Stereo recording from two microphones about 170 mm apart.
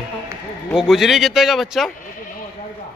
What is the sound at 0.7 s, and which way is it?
Speech, centre (ahead or behind).